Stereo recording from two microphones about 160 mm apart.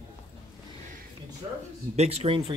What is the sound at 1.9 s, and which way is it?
Speech, 40° right (ahead or behind).